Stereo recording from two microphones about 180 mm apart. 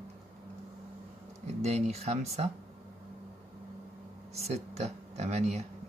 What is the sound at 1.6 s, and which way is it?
Speech, 35° right (ahead or behind).